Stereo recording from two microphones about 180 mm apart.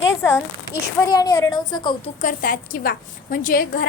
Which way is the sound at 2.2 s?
50° left (ahead or behind).